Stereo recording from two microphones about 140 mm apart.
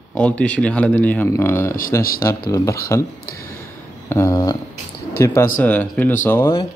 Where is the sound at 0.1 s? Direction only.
10° left (ahead or behind).